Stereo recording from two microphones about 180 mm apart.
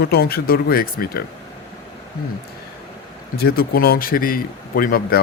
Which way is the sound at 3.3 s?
55° left (ahead or behind).